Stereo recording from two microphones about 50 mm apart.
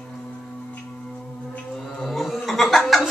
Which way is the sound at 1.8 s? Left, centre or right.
Centre.